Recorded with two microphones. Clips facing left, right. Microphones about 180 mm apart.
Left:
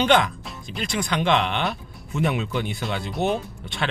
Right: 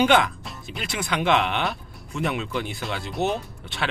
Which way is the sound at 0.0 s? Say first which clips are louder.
Even; 5° right (ahead or behind).